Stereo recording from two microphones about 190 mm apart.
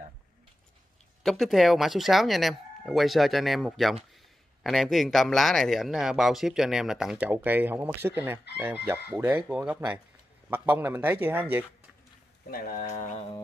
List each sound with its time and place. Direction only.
1.2 s speech: centre (ahead or behind)
12.4 s speech: 50° left (ahead or behind)